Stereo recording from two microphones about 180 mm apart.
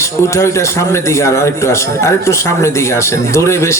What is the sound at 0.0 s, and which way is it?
A man's voice, 15° left (ahead or behind).